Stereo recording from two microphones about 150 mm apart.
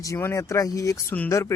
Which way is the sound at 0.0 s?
20° left (ahead or behind).